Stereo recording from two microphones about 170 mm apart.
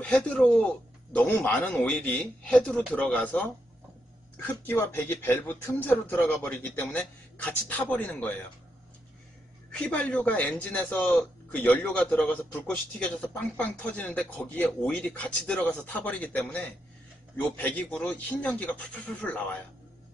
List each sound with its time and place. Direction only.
0.0 s speech: 5° left (ahead or behind)
9.7 s speech: 5° left (ahead or behind)